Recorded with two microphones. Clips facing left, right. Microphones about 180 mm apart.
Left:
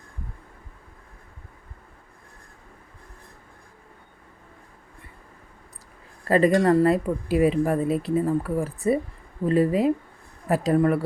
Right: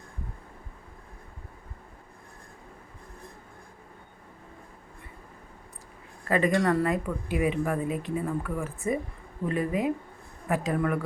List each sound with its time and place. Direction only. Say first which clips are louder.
6.2 s speech: left 6 dB; 35° left (ahead or behind)